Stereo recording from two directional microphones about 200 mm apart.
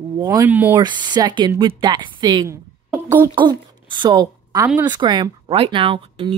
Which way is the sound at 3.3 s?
25° right (ahead or behind).